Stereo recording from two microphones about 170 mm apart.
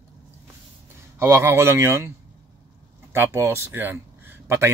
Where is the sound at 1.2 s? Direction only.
15° right (ahead or behind).